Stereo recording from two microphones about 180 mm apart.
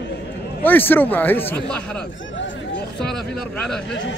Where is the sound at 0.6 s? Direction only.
10° left (ahead or behind).